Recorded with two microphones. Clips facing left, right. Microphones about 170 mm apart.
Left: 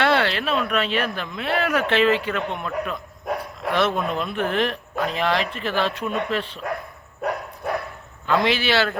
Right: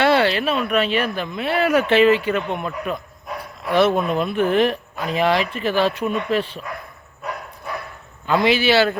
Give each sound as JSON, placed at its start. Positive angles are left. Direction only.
{"t": 0.0, "sound": "speech", "side_deg": -5}
{"t": 7.2, "sound": "dog", "side_deg": 50}
{"t": 8.3, "sound": "speech", "side_deg": -5}